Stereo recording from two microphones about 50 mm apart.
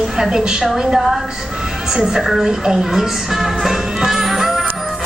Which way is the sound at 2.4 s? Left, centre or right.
Centre.